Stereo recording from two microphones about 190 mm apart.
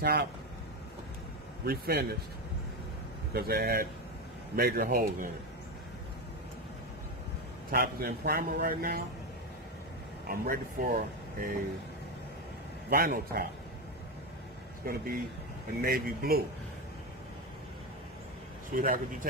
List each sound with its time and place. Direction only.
0.0 s speech: 55° right (ahead or behind)
1.7 s speech: 55° right (ahead or behind)
3.3 s a man's voice: 55° right (ahead or behind)
7.7 s a man's voice: 50° right (ahead or behind)
10.2 s speech: 50° right (ahead or behind)
12.9 s a man's voice: 50° right (ahead or behind)
14.8 s a man's voice: 50° right (ahead or behind)
18.8 s a man's voice: 45° right (ahead or behind)